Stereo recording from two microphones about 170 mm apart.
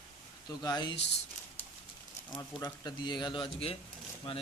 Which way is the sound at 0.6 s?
25° left (ahead or behind).